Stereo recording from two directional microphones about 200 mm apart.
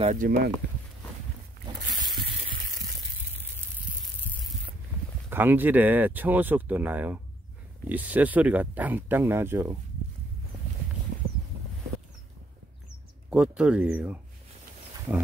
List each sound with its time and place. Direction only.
0.0 s speech: 40° right (ahead or behind)
5.3 s speech: 10° right (ahead or behind)
13.3 s speech: 5° right (ahead or behind)